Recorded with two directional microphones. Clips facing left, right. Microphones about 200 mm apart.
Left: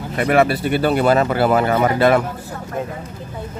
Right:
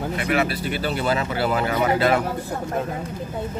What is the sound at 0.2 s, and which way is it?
Speech, 50° left (ahead or behind).